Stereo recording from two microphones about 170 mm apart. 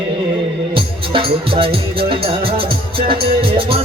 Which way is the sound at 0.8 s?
30° right (ahead or behind).